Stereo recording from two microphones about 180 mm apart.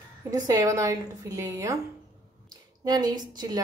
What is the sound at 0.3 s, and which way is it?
A woman's voice, 20° right (ahead or behind).